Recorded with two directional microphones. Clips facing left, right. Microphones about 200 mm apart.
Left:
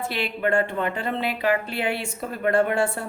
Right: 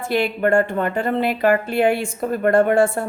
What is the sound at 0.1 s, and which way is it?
A woman's voice, 45° right (ahead or behind).